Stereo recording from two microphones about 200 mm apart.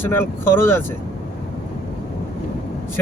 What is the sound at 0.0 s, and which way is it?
Speech, 10° left (ahead or behind).